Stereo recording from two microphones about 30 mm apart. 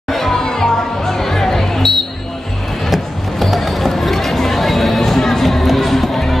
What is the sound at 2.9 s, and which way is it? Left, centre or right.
Music, centre.